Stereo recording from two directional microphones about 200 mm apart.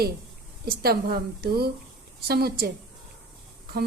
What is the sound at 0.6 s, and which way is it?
A woman's voice, 50° right (ahead or behind).